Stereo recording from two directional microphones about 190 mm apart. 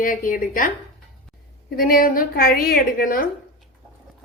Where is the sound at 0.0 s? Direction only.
45° left (ahead or behind).